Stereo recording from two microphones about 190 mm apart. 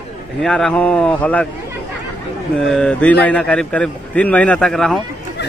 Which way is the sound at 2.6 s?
5° left (ahead or behind).